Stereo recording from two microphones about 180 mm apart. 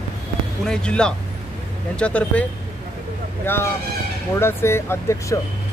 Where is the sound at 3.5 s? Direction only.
10° left (ahead or behind).